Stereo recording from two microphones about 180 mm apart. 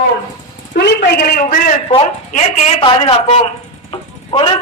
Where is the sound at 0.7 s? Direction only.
65° left (ahead or behind).